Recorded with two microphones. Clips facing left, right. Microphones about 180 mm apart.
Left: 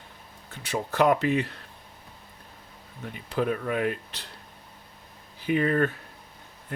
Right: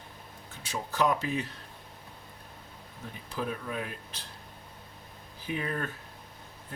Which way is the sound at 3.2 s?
65° left (ahead or behind).